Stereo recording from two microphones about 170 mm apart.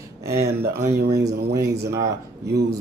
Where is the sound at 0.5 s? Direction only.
70° right (ahead or behind).